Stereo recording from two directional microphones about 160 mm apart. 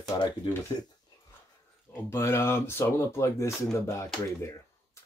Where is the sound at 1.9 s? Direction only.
15° left (ahead or behind).